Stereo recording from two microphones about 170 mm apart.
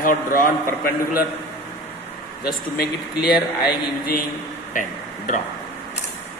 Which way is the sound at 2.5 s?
65° left (ahead or behind).